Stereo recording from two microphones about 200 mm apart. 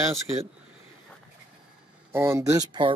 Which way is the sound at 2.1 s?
15° right (ahead or behind).